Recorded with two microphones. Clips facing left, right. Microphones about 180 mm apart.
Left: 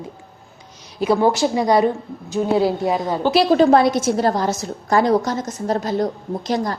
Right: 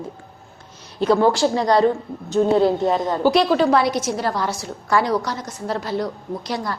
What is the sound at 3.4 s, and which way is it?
A woman's voice, 45° left (ahead or behind).